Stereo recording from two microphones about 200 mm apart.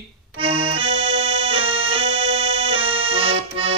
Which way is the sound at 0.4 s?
25° right (ahead or behind).